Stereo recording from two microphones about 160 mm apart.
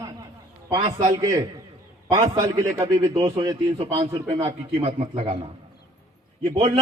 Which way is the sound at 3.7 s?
40° right (ahead or behind).